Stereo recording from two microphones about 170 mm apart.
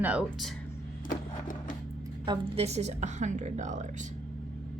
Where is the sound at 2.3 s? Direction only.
35° right (ahead or behind).